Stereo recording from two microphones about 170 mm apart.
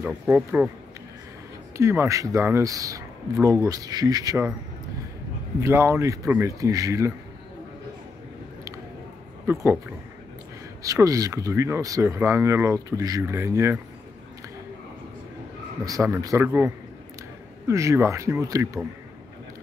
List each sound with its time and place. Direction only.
0.0 s speech: 10° right (ahead or behind)
1.8 s speech: 15° right (ahead or behind)
5.6 s speech: 15° right (ahead or behind)
9.5 s speech: 15° right (ahead or behind)
10.8 s speech: 20° right (ahead or behind)
15.8 s speech: 20° right (ahead or behind)